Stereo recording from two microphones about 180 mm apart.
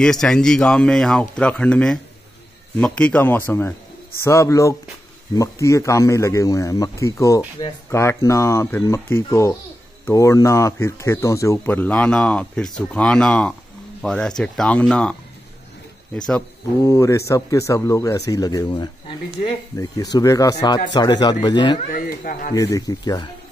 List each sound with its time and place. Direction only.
0.0 s a man's voice: 5° left (ahead or behind)
16.8 s a man's voice: 15° left (ahead or behind)
21.7 s speech: 50° left (ahead or behind)
22.5 s speech: 20° left (ahead or behind)